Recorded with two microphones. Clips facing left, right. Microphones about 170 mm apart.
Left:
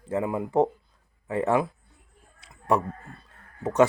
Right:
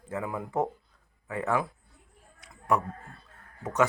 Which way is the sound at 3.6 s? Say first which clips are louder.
Left 6 dB; 30° left (ahead or behind).